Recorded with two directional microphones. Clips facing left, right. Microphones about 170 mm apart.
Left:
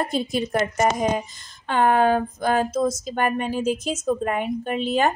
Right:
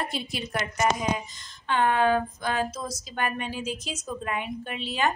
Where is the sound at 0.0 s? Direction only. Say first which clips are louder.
Left 8 dB; 45° left (ahead or behind).